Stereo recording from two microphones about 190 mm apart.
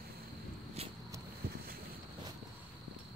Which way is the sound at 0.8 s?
30° right (ahead or behind).